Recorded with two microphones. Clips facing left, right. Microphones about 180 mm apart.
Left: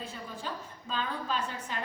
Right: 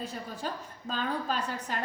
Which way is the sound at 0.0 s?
40° right (ahead or behind).